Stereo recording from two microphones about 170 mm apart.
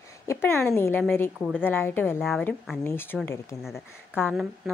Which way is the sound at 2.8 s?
15° left (ahead or behind).